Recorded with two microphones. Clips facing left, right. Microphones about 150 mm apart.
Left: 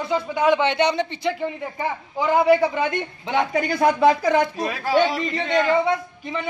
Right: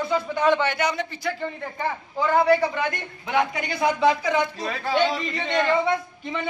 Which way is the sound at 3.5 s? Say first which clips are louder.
Left 5 dB; 45° left (ahead or behind).